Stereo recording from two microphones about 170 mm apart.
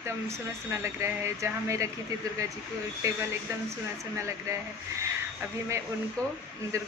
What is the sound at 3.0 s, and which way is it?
Speech, 20° right (ahead or behind).